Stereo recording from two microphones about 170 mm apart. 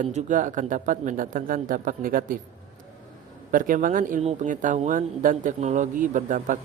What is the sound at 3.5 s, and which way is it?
Speech, 55° right (ahead or behind).